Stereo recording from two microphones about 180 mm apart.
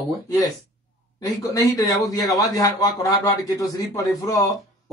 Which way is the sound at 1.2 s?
20° left (ahead or behind).